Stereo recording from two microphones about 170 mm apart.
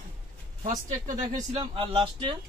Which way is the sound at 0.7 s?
50° right (ahead or behind).